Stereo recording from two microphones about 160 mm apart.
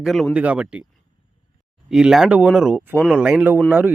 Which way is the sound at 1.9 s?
5° right (ahead or behind).